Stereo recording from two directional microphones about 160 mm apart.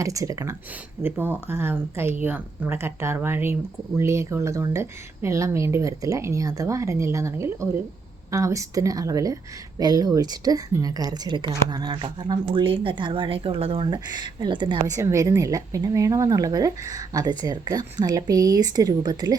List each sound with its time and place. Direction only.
0.0 s speech: 20° right (ahead or behind)